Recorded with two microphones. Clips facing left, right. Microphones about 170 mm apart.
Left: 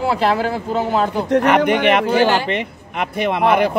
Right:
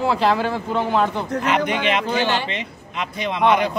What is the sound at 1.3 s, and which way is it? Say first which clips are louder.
A man's voice: left 7 dB; 65° left (ahead or behind).